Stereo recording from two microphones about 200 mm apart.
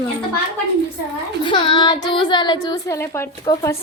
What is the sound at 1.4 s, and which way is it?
Speech, 25° left (ahead or behind).